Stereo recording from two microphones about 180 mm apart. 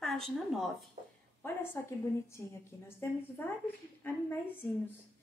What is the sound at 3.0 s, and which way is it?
Speech, 10° left (ahead or behind).